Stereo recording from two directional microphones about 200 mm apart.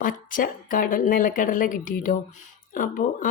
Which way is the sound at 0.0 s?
45° left (ahead or behind).